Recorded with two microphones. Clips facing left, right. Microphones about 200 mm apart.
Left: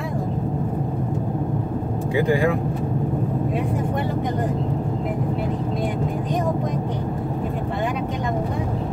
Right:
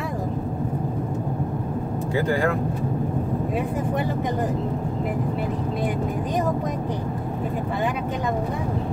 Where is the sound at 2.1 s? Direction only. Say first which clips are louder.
Left 3 dB; 15° left (ahead or behind).